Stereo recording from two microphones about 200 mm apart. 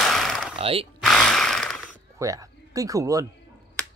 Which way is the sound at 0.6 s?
30° right (ahead or behind).